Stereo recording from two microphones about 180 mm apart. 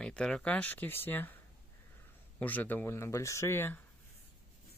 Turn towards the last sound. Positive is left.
turn(degrees=15)  # may be behind; listen again after turning